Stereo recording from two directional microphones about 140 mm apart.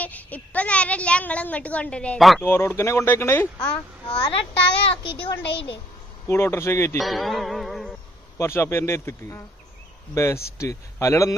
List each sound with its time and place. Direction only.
0.0 s a woman's voice: 10° left (ahead or behind)
2.4 s a woman's voice: 15° left (ahead or behind)
5.0 s a child's voice: 40° left (ahead or behind)
6.2 s speech: 20° left (ahead or behind)
7.0 s music: centre (ahead or behind)
8.4 s speech: 20° left (ahead or behind)